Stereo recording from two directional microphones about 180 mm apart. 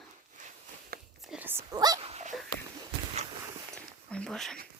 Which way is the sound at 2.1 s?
35° right (ahead or behind).